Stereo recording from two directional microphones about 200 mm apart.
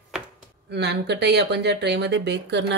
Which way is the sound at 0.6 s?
55° right (ahead or behind).